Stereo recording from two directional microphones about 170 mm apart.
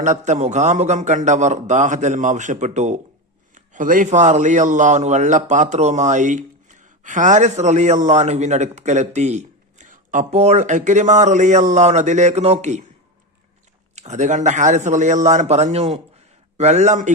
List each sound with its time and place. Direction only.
0.0 s a man's voice: 45° right (ahead or behind)
13.9 s a man's voice: 45° right (ahead or behind)